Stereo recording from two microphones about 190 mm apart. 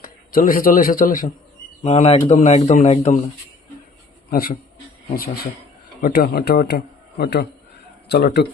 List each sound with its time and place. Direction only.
0.0 s speech: 50° left (ahead or behind)
1.8 s a man's voice: 35° left (ahead or behind)
4.3 s a man's voice: 50° left (ahead or behind)